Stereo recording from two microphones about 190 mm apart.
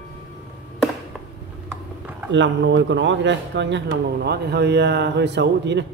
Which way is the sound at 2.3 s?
75° right (ahead or behind).